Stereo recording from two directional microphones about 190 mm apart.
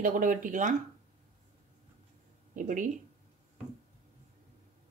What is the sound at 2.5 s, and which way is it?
Speech, 45° right (ahead or behind).